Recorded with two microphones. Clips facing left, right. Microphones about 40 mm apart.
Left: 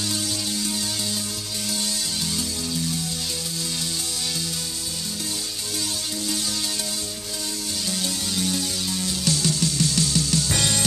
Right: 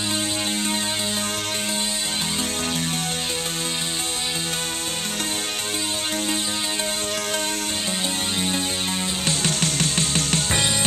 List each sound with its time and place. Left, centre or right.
9.2 s music: right
10.5 s music: right